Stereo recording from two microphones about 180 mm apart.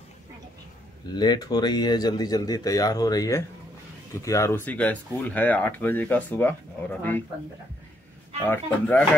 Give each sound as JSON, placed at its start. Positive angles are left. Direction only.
{"t": 1.1, "sound": "speech", "side_deg": 25}
{"t": 8.5, "sound": "speech", "side_deg": 10}